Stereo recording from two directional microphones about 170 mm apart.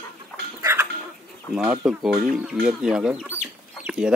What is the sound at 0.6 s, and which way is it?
Chicken, 15° right (ahead or behind).